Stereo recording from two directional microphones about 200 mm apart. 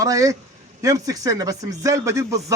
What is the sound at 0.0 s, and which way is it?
Speech, 15° right (ahead or behind).